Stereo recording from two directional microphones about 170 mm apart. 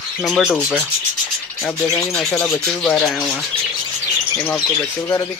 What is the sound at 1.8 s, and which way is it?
Speech, 15° left (ahead or behind).